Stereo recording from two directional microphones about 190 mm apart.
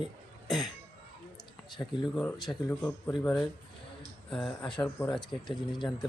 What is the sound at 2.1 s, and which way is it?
Speech, 5° left (ahead or behind).